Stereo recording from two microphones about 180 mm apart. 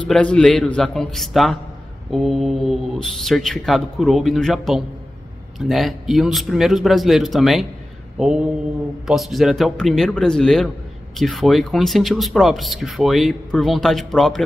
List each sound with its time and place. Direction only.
0.1 s speech: 5° left (ahead or behind)